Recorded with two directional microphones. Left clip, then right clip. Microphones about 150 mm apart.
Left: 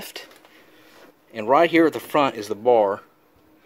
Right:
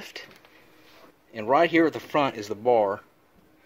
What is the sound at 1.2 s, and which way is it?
Speech, 15° left (ahead or behind).